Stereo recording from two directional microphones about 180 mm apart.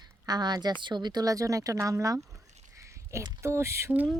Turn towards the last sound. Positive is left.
turn(degrees=-10)  # may be behind; listen again after turning